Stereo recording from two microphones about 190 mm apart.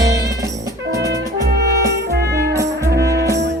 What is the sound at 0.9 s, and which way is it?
Music, 65° right (ahead or behind).